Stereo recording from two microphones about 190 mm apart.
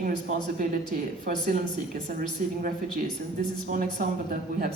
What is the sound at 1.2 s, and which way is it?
Speech, 45° right (ahead or behind).